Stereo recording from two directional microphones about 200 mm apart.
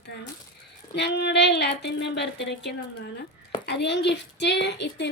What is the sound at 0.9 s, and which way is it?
A woman's voice, 55° left (ahead or behind).